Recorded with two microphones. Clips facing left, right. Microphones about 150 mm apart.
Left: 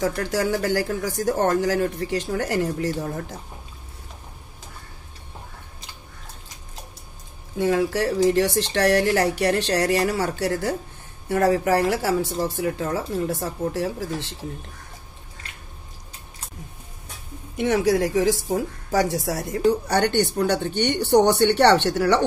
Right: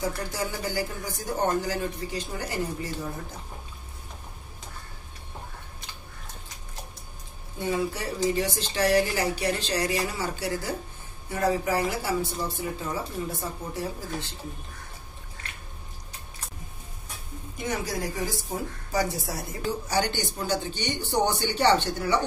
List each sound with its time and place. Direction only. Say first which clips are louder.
0.0 s speech: left 7 dB; 90° left
7.5 s speech: left 7 dB; 85° left
12.5 s speech: left 7 dB; 70° left (ahead or behind)
17.6 s speech: left 11 dB; 75° left (ahead or behind)